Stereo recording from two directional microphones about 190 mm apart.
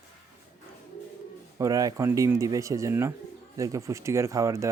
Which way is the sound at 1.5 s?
20° right (ahead or behind).